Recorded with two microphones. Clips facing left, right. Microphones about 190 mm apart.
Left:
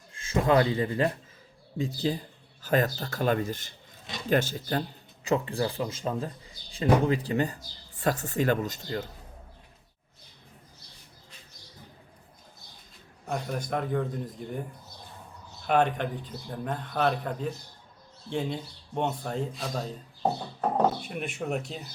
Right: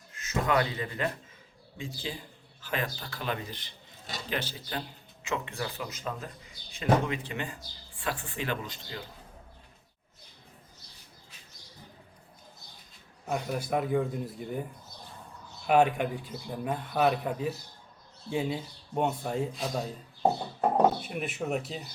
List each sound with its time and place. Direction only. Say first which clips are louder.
0.1 s speech: left 5 dB; 30° left (ahead or behind); by 4.8 s 45° left (ahead or behind)
5.2 s speech: left 7 dB; 35° left (ahead or behind)
13.2 s speech: even; 5° right (ahead or behind)